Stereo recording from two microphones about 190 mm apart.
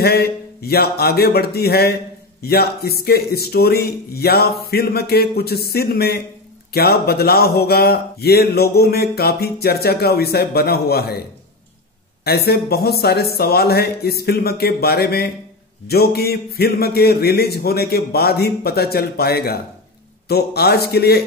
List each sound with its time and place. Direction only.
0.0 s speech: 55° left (ahead or behind)
12.3 s speech: 55° left (ahead or behind)